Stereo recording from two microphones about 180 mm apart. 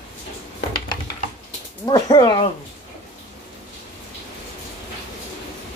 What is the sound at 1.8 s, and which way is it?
Speech, 25° left (ahead or behind).